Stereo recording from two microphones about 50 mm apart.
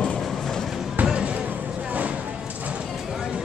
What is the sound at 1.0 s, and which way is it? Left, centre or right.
Basketball bounce, right.